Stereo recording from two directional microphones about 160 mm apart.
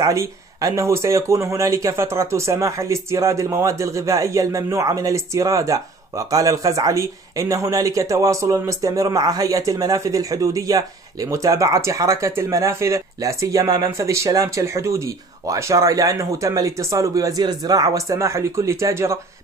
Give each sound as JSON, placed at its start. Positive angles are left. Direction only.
{"t": 0.0, "sound": "speech", "side_deg": -20}